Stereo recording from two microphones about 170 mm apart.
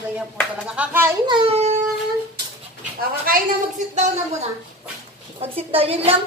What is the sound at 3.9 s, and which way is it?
A woman's voice, 45° right (ahead or behind).